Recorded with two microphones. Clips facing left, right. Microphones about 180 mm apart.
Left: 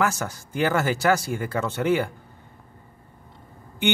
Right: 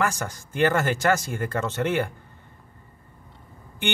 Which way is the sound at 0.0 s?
5° left (ahead or behind).